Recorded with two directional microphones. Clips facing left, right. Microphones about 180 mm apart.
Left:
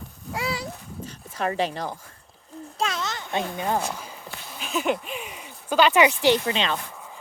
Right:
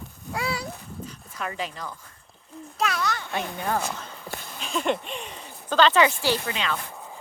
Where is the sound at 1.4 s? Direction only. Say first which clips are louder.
Left 7 dB; 35° left (ahead or behind).